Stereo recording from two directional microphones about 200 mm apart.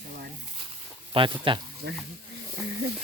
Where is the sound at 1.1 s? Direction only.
25° right (ahead or behind).